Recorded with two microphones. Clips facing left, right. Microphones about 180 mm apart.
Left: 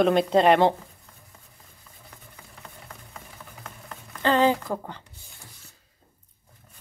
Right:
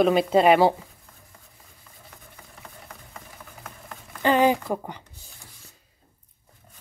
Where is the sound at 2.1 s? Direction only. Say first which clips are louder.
Even; centre (ahead or behind).